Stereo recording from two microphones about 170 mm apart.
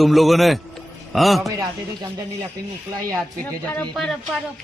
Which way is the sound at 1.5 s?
20° right (ahead or behind).